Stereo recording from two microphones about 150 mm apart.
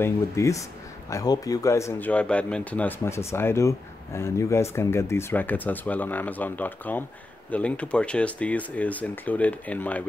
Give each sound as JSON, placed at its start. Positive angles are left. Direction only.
{"t": 0.0, "sound": "speech", "side_deg": 20}